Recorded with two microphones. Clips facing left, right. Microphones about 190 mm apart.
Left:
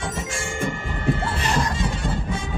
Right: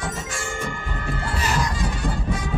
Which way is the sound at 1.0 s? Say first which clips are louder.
Left 4 dB; 25° left (ahead or behind).